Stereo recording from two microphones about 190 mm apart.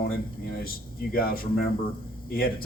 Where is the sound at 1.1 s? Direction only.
50° left (ahead or behind).